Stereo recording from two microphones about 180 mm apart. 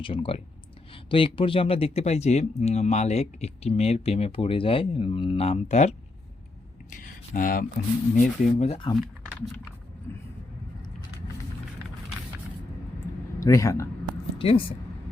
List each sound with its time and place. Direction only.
0.0 s speech: 30° left (ahead or behind)
6.9 s a sound: 45° left (ahead or behind)
8.1 s speech: 40° left (ahead or behind)
10.1 s speech: 15° left (ahead or behind)
13.4 s a man's voice: 15° left (ahead or behind)
14.3 s speech: 30° left (ahead or behind)